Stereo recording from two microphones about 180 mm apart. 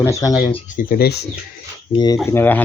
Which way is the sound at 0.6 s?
50° left (ahead or behind).